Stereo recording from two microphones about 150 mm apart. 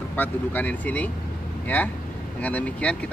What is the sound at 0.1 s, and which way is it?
Speech, 10° left (ahead or behind).